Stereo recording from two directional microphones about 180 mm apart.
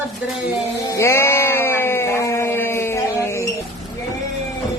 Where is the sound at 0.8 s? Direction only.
15° left (ahead or behind).